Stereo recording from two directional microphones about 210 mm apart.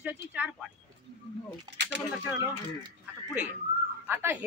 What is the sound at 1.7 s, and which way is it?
Speech, 55° right (ahead or behind).